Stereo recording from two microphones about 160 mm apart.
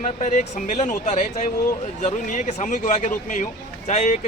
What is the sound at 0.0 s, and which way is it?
Speech, 50° left (ahead or behind).